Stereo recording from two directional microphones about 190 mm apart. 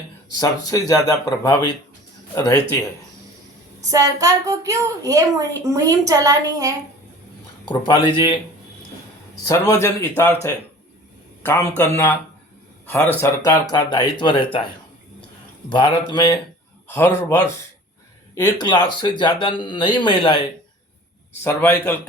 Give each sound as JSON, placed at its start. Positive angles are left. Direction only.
{"t": 0.3, "sound": "a man's voice", "side_deg": 20}
{"t": 3.8, "sound": "a woman's voice", "side_deg": -15}
{"t": 7.7, "sound": "speech", "side_deg": 25}
{"t": 9.5, "sound": "a man's voice", "side_deg": 15}
{"t": 11.8, "sound": "a man's voice", "side_deg": 10}
{"t": 15.7, "sound": "a man's voice", "side_deg": 25}
{"t": 21.4, "sound": "a man's voice", "side_deg": 10}